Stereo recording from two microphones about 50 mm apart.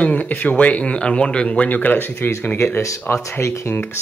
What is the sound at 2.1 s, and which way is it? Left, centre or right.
Speech, left.